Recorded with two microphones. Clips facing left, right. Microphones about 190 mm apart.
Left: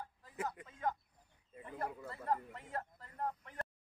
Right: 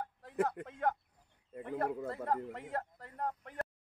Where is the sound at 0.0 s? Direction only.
65° right (ahead or behind).